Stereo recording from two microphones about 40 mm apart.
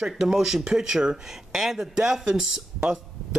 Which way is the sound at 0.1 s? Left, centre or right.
Centre.